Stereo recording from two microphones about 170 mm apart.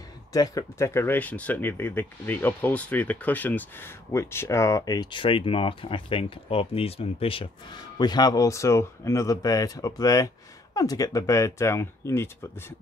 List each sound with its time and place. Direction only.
0.3 s speech: 20° left (ahead or behind)